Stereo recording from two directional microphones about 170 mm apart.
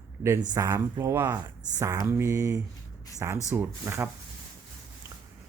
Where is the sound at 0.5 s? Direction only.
20° right (ahead or behind).